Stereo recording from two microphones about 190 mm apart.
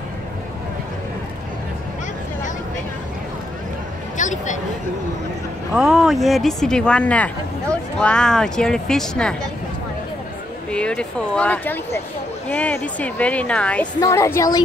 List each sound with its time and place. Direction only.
4.2 s speech: 40° left (ahead or behind)
5.7 s speech: 5° right (ahead or behind)
10.7 s speech: 5° left (ahead or behind)